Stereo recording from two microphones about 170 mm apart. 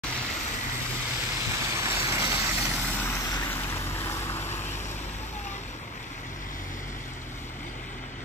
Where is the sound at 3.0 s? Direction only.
15° left (ahead or behind).